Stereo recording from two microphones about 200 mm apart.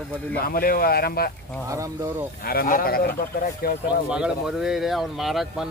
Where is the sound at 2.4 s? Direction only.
45° left (ahead or behind).